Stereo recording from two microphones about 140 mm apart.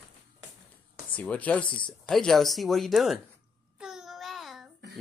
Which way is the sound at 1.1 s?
10° left (ahead or behind).